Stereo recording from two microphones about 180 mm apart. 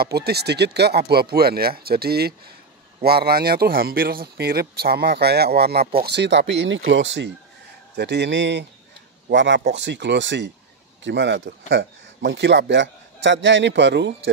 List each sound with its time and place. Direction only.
0.0 s speech: 60° right (ahead or behind)
6.0 s speech: 75° right (ahead or behind)
7.9 s speech: 70° right (ahead or behind)